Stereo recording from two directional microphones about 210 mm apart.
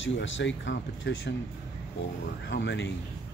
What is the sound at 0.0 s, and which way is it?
Speech, 60° left (ahead or behind).